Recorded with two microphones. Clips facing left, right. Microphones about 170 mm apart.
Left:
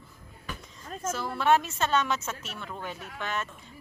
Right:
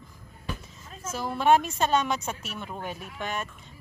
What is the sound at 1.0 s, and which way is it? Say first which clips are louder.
A woman's voice: right 2 dB; 15° right (ahead or behind).